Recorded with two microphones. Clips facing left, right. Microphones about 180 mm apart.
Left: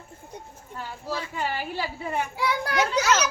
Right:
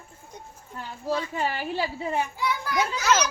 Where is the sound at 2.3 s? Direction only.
70° left (ahead or behind).